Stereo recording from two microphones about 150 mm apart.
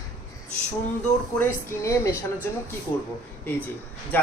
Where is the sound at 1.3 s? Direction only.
15° left (ahead or behind).